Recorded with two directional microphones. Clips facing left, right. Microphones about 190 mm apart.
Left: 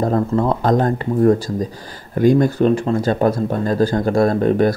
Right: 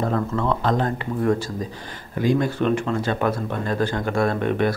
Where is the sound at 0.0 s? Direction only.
40° left (ahead or behind).